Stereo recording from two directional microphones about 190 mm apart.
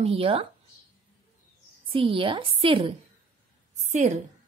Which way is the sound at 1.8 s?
30° right (ahead or behind).